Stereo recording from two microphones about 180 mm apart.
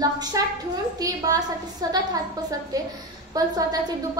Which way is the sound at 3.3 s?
20° right (ahead or behind).